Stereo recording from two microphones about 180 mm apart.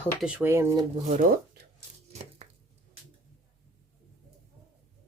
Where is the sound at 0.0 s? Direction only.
5° right (ahead or behind).